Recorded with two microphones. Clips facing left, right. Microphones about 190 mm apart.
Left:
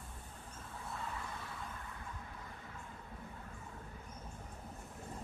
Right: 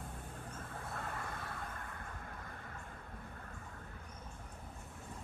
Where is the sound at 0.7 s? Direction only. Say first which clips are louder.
Even; 55° right (ahead or behind).